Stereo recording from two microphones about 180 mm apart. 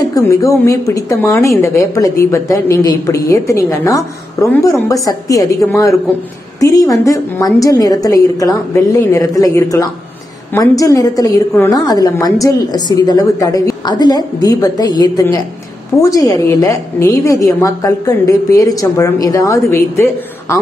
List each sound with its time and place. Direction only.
0.1 s a woman's voice: 15° left (ahead or behind)
6.6 s a woman's voice: 20° left (ahead or behind)